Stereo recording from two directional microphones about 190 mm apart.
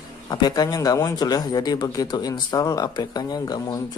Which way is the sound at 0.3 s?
20° left (ahead or behind).